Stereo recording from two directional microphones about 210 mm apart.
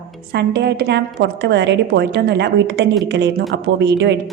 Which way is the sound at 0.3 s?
50° right (ahead or behind).